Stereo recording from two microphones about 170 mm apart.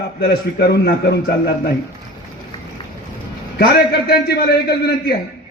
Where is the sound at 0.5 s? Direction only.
75° left (ahead or behind).